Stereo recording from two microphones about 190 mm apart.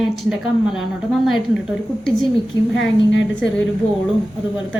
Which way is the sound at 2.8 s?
75° left (ahead or behind).